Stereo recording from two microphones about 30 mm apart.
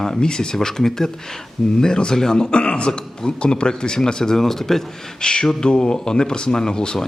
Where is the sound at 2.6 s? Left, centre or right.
Left.